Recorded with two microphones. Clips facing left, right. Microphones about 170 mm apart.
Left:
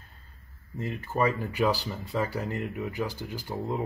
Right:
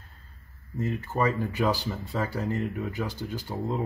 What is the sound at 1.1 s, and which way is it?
Speech, 10° left (ahead or behind).